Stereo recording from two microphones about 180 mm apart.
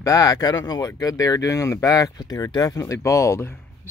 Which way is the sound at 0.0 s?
20° left (ahead or behind).